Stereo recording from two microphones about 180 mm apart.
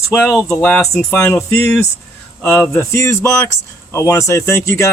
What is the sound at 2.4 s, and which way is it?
Speech, 5° left (ahead or behind).